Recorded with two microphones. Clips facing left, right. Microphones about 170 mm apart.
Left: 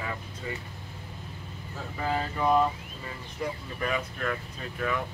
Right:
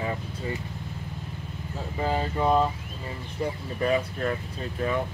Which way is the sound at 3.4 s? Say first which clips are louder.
Right 5 dB; 30° right (ahead or behind).